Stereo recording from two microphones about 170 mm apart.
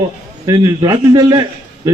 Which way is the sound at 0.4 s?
25° right (ahead or behind).